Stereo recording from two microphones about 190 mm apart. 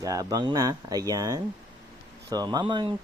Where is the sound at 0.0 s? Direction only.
15° right (ahead or behind).